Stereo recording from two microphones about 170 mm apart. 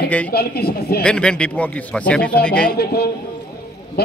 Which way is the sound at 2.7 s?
70° left (ahead or behind).